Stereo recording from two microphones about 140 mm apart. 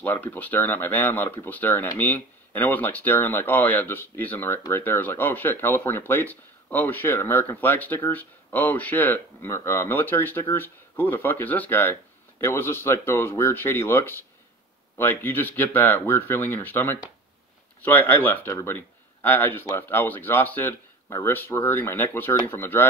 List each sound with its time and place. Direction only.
0.0 s speech: 15° left (ahead or behind)